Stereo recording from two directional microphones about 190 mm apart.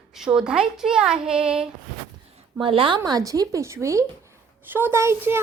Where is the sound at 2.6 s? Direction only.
25° right (ahead or behind).